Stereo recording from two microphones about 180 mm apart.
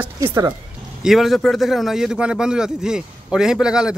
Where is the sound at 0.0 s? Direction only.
15° right (ahead or behind).